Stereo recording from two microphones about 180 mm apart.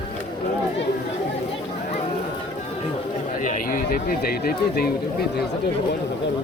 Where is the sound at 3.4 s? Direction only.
45° left (ahead or behind).